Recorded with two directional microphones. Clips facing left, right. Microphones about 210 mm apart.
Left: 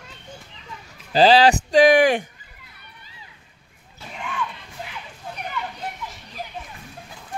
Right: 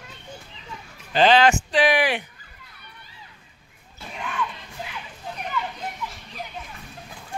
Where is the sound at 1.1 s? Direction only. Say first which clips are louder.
Left 3 dB; 35° left (ahead or behind).